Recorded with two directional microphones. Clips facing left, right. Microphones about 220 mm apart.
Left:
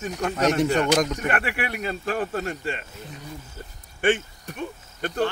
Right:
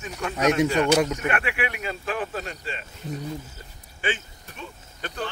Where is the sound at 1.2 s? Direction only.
40° left (ahead or behind).